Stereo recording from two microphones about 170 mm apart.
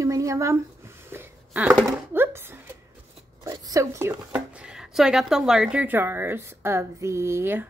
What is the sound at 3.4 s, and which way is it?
Speech, 20° right (ahead or behind).